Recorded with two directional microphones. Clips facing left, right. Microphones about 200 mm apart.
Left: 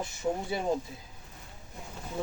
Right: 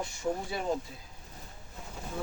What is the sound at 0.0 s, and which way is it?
Speech, 20° left (ahead or behind).